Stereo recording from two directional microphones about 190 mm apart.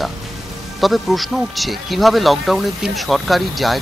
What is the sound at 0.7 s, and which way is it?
A man's voice, centre (ahead or behind).